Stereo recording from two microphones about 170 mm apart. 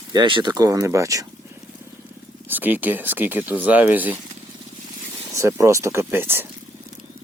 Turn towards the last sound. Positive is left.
turn(degrees=-15)  # may be behind; listen again after turning